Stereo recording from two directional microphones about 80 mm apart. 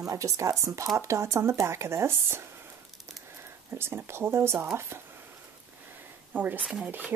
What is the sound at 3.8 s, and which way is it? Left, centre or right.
Speech, right.